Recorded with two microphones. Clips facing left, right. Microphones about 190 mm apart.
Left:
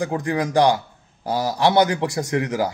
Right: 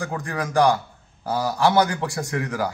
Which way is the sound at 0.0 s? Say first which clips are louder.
Left 5 dB; 20° left (ahead or behind).